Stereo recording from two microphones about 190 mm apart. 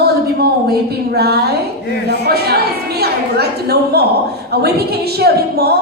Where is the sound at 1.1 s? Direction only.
55° right (ahead or behind).